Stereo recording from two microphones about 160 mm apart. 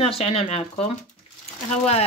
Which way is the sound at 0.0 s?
40° left (ahead or behind).